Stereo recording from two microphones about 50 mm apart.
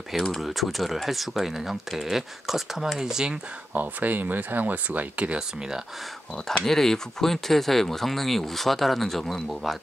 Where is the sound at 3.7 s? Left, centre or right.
Right.